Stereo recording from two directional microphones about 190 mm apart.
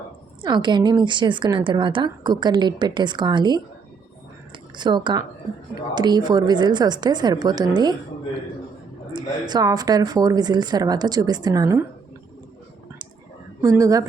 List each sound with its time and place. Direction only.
0.4 s a woman's voice: 25° right (ahead or behind)
4.8 s a woman's voice: 25° right (ahead or behind)
9.1 s a woman's voice: 20° right (ahead or behind)
13.6 s a woman's voice: 15° right (ahead or behind)